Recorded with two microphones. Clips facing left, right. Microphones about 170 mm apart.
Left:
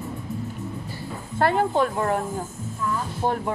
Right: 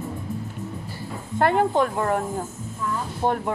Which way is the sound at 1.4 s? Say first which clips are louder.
Right 1 dB; 20° right (ahead or behind).